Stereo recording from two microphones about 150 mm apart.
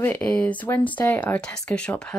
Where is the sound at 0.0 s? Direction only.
10° left (ahead or behind).